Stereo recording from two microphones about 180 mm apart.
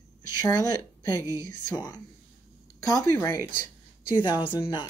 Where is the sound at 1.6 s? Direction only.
20° left (ahead or behind).